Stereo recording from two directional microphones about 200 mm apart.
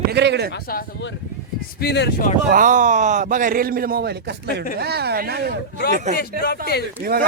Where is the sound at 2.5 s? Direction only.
40° right (ahead or behind).